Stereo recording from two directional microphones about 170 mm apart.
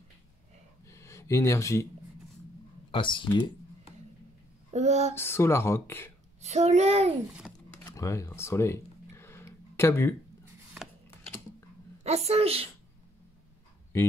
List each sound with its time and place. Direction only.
0.8 s a sound: 15° left (ahead or behind)
2.9 s speech: 30° left (ahead or behind)
3.3 s computer keyboard: 25° left (ahead or behind)
4.6 s speech: 40° right (ahead or behind)
5.1 s speech: 15° left (ahead or behind)
6.4 s speech: 40° right (ahead or behind)
7.7 s a sound: 20° left (ahead or behind)
12.3 s speech: 35° right (ahead or behind)